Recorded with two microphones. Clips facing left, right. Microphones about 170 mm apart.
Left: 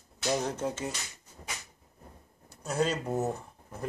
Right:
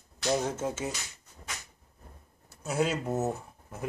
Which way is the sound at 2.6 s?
5° right (ahead or behind).